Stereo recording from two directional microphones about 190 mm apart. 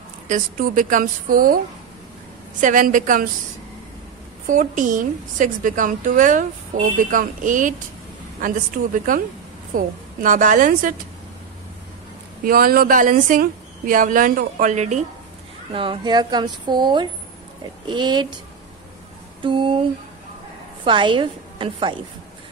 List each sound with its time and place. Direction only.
0.3 s speech: 45° right (ahead or behind)
2.6 s speech: 45° right (ahead or behind)
4.5 s speech: 45° right (ahead or behind)
12.4 s speech: 50° right (ahead or behind)
15.7 s speech: 25° right (ahead or behind)
19.4 s speech: 25° right (ahead or behind)
20.8 s speech: 25° right (ahead or behind)